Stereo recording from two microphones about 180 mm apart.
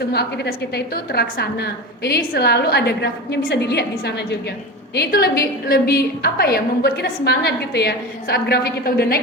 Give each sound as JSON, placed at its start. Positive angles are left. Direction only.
{"t": 0.1, "sound": "a woman's voice", "side_deg": 65}